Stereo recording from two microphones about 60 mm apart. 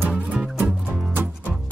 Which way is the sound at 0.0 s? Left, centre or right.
Centre.